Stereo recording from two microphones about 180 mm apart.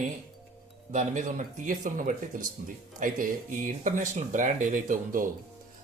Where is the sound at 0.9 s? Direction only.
45° right (ahead or behind).